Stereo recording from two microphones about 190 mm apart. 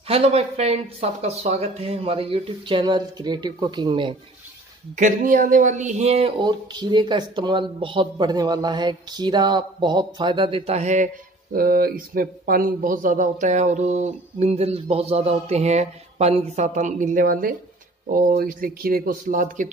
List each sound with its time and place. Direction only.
0.1 s speech: 30° right (ahead or behind)
4.9 s speech: 45° right (ahead or behind)
11.5 s speech: 50° right (ahead or behind)